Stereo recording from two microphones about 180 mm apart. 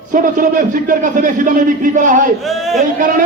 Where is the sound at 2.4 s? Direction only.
Centre (ahead or behind).